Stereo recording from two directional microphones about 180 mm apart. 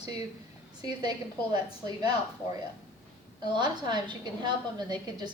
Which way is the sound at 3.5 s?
25° right (ahead or behind).